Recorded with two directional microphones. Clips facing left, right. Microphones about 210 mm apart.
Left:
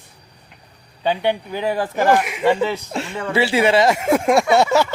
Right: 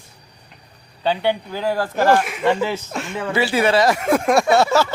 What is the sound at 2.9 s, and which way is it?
Speech, 30° left (ahead or behind).